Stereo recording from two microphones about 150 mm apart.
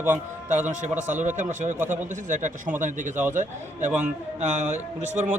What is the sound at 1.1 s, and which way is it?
A man's voice, 55° right (ahead or behind).